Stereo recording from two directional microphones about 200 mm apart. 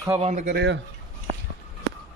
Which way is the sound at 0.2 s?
35° right (ahead or behind).